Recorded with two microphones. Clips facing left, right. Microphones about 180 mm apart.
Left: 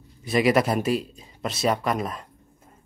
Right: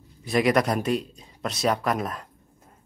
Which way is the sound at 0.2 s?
Centre (ahead or behind).